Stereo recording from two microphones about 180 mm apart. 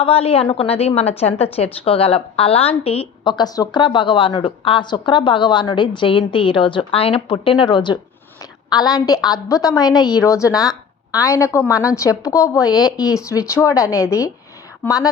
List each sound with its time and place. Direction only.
0.0 s a woman's voice: 30° left (ahead or behind); by 15.0 s 10° left (ahead or behind)